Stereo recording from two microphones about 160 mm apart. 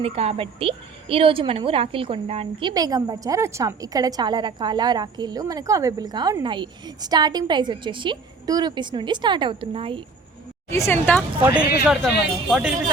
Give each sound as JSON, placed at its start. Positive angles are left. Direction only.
{"t": 0.0, "sound": "a woman's voice", "side_deg": -35}
{"t": 10.7, "sound": "a woman's voice", "side_deg": 15}
{"t": 11.4, "sound": "a man's voice", "side_deg": -10}